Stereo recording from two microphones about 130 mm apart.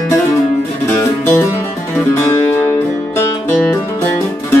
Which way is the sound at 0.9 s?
20° left (ahead or behind).